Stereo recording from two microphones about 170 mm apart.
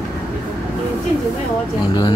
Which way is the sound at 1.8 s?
25° left (ahead or behind).